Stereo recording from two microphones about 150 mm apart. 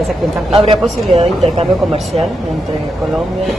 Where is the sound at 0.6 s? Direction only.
45° right (ahead or behind).